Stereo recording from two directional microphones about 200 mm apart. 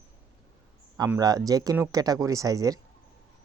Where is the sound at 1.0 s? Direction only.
15° right (ahead or behind).